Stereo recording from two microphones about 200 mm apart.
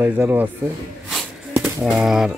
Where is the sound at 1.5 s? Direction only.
5° right (ahead or behind).